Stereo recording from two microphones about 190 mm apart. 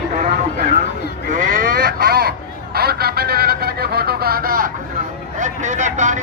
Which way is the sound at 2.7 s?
55° right (ahead or behind).